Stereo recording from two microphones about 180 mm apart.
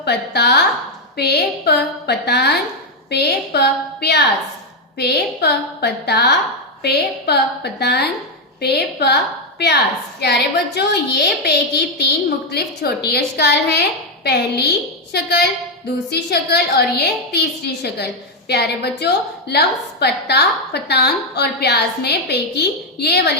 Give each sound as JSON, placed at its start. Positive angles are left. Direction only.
{"t": 0.0, "sound": "a woman's voice", "side_deg": 65}
{"t": 10.2, "sound": "a woman's voice", "side_deg": 65}